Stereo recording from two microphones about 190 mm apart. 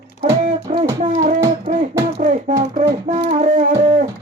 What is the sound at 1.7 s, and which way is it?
Beatboxing, 45° right (ahead or behind).